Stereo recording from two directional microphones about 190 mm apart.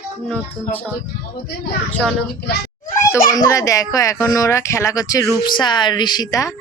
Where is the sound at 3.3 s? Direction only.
15° left (ahead or behind).